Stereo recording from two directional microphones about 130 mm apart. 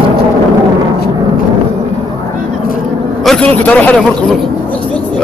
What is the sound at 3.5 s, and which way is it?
Speech, 10° left (ahead or behind).